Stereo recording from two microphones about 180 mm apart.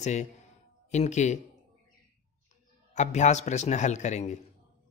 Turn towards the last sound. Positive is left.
turn(degrees=40)  # may be behind; listen again after turning